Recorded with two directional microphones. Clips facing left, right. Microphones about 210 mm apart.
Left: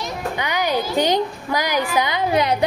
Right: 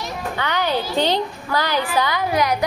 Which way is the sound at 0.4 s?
15° left (ahead or behind).